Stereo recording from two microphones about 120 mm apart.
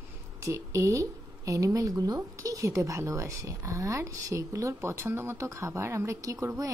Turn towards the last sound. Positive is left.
turn(degrees=-25)  # may be behind; listen again after turning